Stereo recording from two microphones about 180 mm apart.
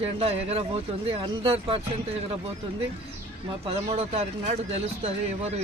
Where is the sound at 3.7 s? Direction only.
35° right (ahead or behind).